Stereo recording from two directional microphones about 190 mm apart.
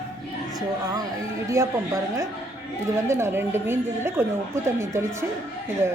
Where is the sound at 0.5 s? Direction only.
20° right (ahead or behind).